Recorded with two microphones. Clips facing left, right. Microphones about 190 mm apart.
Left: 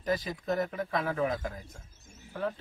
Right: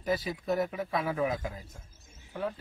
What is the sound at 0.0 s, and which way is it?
A man's voice, 10° right (ahead or behind).